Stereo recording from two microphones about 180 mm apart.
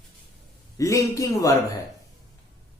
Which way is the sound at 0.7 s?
20° left (ahead or behind).